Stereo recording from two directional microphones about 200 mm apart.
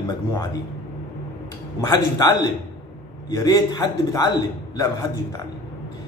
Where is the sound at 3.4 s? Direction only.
20° left (ahead or behind).